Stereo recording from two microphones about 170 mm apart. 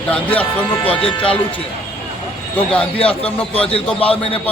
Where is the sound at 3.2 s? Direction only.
35° left (ahead or behind).